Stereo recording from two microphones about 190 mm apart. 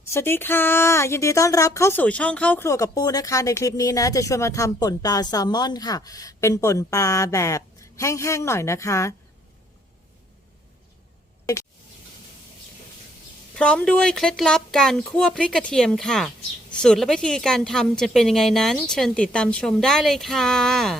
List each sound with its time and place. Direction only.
0.1 s a woman's voice: 10° left (ahead or behind)
13.6 s speech: 5° left (ahead or behind)